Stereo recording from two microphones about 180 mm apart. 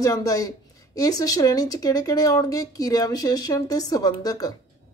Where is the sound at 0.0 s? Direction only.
20° left (ahead or behind).